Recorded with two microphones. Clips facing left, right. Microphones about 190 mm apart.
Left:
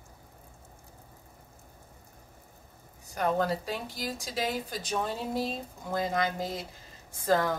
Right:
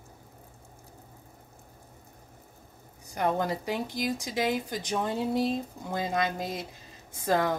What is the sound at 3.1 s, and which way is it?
Speech, 15° right (ahead or behind).